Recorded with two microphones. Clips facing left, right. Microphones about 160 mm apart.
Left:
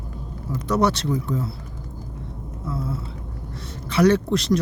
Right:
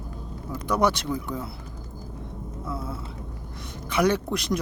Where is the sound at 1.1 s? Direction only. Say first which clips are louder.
Left 5 dB; 20° left (ahead or behind).